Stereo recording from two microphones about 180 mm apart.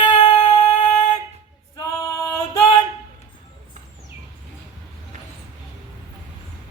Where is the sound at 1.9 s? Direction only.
15° left (ahead or behind).